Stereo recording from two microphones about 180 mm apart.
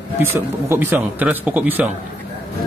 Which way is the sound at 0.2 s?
10° right (ahead or behind).